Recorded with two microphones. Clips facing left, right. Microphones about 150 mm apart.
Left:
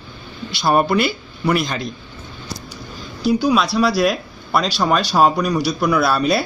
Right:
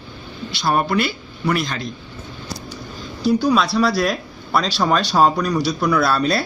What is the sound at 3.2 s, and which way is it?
Speech, 5° left (ahead or behind).